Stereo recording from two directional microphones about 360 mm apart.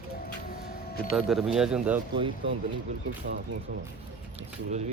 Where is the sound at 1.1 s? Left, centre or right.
Centre.